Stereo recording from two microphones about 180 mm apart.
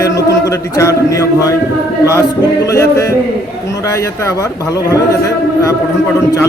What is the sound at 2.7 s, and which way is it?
Speech, 20° left (ahead or behind).